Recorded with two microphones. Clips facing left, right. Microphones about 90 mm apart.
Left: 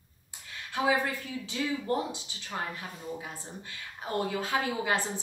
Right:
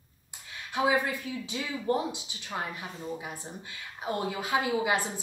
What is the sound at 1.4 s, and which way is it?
Speech, 20° right (ahead or behind).